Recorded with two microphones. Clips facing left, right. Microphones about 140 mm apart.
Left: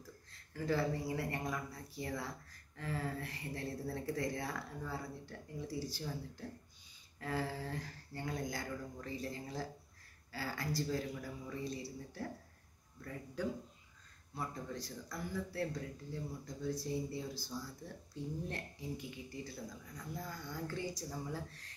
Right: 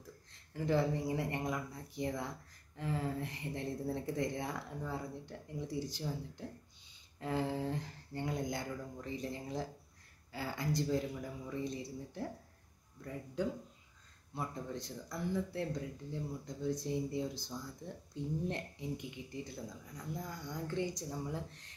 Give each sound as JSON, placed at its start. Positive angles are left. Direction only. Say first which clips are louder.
{"t": 0.3, "sound": "speech", "louder": "right 3 dB", "side_deg": -20}